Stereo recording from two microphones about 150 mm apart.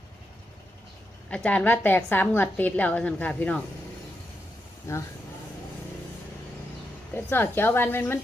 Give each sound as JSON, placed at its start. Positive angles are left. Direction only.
{"t": 1.3, "sound": "a woman's voice", "side_deg": 10}
{"t": 4.9, "sound": "speech", "side_deg": 20}
{"t": 7.1, "sound": "a woman's voice", "side_deg": 15}